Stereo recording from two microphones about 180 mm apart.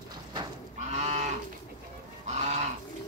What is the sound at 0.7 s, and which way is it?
Moo, 40° right (ahead or behind).